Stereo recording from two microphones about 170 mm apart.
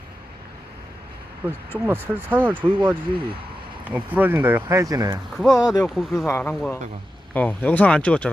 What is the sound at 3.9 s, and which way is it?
Speech, 10° right (ahead or behind).